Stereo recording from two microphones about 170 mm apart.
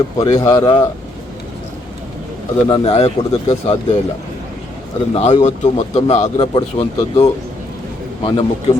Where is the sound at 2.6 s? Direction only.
30° left (ahead or behind).